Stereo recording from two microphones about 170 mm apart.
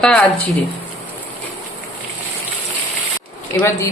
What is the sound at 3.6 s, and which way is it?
Speech, 10° left (ahead or behind).